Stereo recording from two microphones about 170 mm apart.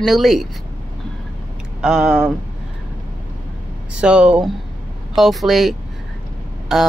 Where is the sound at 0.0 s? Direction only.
Centre (ahead or behind).